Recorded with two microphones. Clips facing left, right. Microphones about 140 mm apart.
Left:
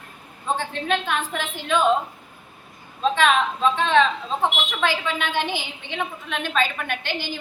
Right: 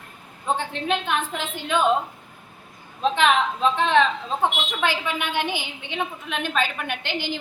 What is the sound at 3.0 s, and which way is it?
A woman's voice, 20° right (ahead or behind).